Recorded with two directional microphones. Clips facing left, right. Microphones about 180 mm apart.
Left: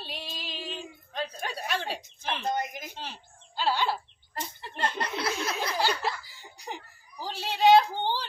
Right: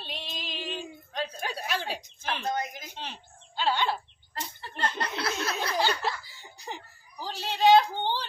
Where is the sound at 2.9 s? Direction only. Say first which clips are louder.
Even; 5° left (ahead or behind).